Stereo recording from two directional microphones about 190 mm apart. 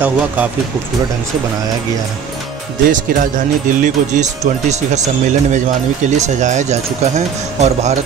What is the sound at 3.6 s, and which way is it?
Speech, 40° right (ahead or behind).